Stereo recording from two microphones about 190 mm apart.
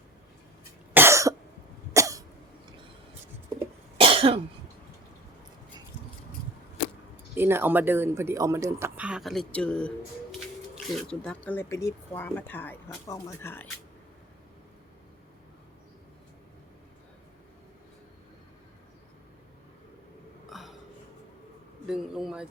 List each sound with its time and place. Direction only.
0.9 s cough: 15° right (ahead or behind)
3.9 s cough: 30° right (ahead or behind)
7.3 s speech: 10° right (ahead or behind); by 9.9 s 5° left (ahead or behind)
10.9 s speech: 5° left (ahead or behind)
20.5 s a sound: centre (ahead or behind)
21.8 s a man's voice: centre (ahead or behind)